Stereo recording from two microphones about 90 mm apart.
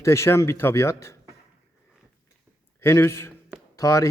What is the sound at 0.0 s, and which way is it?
A man's voice, 30° left (ahead or behind).